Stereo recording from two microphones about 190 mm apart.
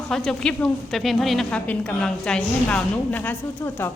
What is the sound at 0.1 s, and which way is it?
A woman's voice, 5° left (ahead or behind).